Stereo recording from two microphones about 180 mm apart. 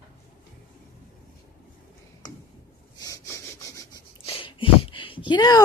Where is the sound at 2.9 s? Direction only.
20° left (ahead or behind).